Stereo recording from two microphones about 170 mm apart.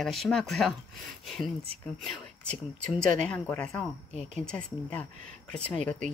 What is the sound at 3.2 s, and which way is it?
A woman's voice, 5° left (ahead or behind).